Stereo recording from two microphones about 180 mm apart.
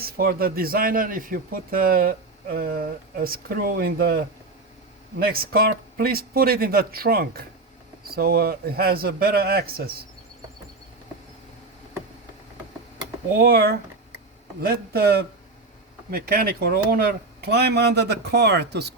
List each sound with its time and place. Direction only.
0.0 s speech: 55° right (ahead or behind)
13.4 s speech: 60° right (ahead or behind)